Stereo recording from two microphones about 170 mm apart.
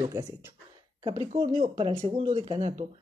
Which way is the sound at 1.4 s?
45° right (ahead or behind).